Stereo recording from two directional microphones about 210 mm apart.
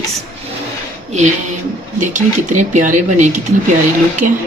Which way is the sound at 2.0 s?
35° right (ahead or behind).